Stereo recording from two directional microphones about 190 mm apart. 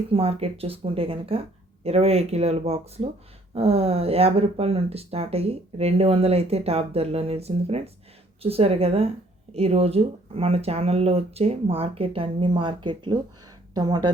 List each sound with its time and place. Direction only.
0.1 s speech: 30° right (ahead or behind)